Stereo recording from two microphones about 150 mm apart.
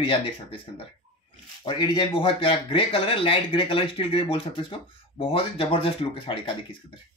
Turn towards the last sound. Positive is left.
turn(degrees=35)  # may be behind; listen again after turning